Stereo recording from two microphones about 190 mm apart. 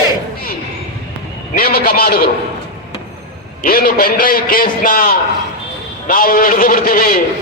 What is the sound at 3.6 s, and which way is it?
A man's voice, 50° left (ahead or behind).